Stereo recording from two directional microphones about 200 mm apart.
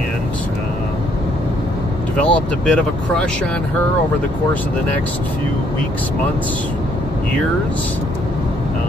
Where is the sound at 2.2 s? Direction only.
5° left (ahead or behind).